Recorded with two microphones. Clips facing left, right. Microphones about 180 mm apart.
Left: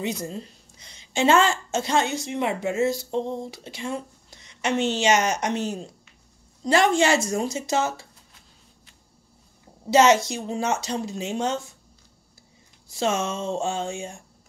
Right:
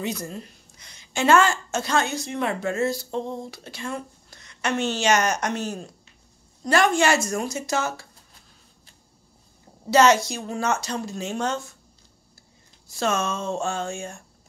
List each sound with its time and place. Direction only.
0.0 s a woman's voice: 25° left (ahead or behind)
9.8 s a woman's voice: 20° left (ahead or behind)
12.9 s a woman's voice: 25° left (ahead or behind)